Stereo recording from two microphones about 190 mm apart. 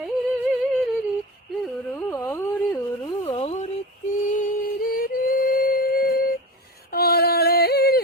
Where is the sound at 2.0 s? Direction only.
10° left (ahead or behind).